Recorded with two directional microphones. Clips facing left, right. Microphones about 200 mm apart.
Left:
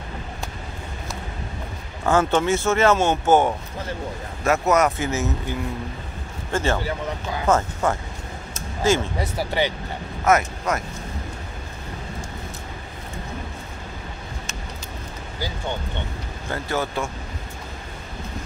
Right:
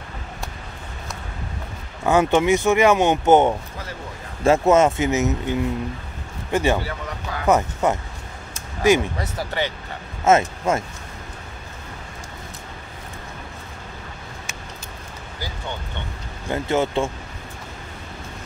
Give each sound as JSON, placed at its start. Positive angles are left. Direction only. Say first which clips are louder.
{"t": 2.0, "sound": "speech", "louder": "right 2 dB", "side_deg": -15}
{"t": 9.2, "sound": "speech", "louder": "left 2 dB", "side_deg": 10}
{"t": 10.2, "sound": "speech", "louder": "right 3 dB", "side_deg": -25}
{"t": 16.4, "sound": "speech", "louder": "right 5 dB", "side_deg": -20}